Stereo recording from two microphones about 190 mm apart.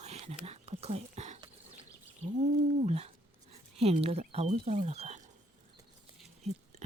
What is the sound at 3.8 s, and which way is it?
Speech, 30° right (ahead or behind).